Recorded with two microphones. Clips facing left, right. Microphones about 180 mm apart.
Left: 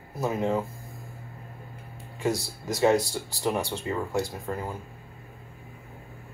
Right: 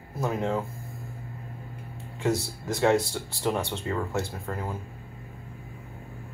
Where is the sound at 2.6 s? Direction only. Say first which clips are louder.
Left 1 dB; centre (ahead or behind).